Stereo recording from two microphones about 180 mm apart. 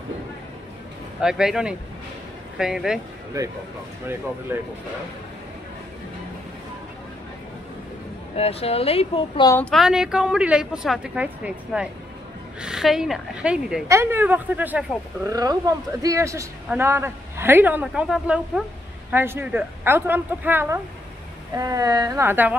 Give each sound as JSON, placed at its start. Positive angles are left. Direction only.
{"t": 1.2, "sound": "a woman's voice", "side_deg": -5}
{"t": 4.5, "sound": "speech", "side_deg": -15}
{"t": 8.4, "sound": "speech", "side_deg": 35}
{"t": 9.5, "sound": "a woman's voice", "side_deg": 5}
{"t": 15.2, "sound": "speech", "side_deg": -20}